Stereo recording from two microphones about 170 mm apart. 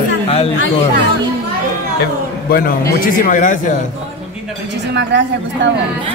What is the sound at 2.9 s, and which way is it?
Speech, 50° left (ahead or behind).